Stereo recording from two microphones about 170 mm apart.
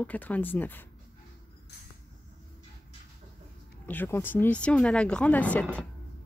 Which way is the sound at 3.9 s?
10° left (ahead or behind).